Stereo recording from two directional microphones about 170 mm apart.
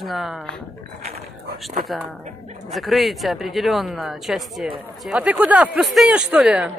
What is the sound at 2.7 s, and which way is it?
Speech, centre (ahead or behind).